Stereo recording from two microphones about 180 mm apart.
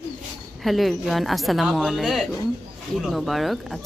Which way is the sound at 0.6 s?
Centre (ahead or behind).